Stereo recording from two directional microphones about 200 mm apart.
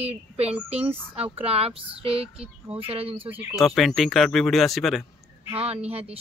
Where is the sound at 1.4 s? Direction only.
30° right (ahead or behind).